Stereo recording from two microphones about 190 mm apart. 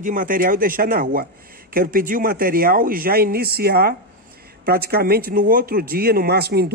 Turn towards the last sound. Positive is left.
turn(degrees=-55)  # may be behind; listen again after turning